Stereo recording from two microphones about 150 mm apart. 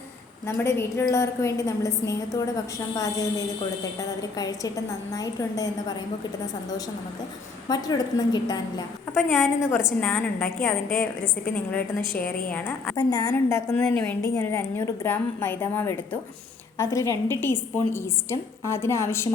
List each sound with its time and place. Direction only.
0.4 s a woman's voice: 15° left (ahead or behind)
9.1 s a woman's voice: centre (ahead or behind)
12.5 s a woman's voice: 10° left (ahead or behind)
13.0 s a woman's voice: 25° left (ahead or behind)